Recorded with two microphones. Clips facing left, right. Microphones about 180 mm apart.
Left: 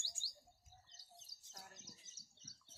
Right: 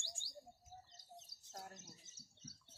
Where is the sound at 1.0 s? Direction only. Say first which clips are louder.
Right 7 dB; 55° right (ahead or behind).